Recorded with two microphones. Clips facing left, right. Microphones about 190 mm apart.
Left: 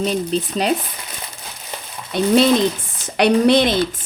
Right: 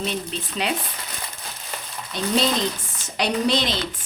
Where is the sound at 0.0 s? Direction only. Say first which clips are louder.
Left 8 dB; 40° left (ahead or behind).